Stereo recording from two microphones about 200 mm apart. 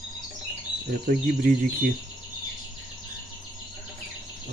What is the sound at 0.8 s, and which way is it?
Speech, 45° right (ahead or behind).